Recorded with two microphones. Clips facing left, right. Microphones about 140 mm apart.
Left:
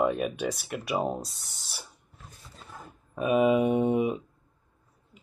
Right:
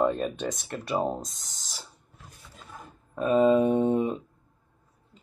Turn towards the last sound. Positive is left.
turn(degrees=10)  # may be behind; listen again after turning